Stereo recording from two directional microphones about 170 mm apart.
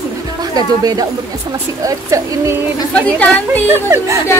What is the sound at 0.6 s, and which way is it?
Speech, 20° right (ahead or behind).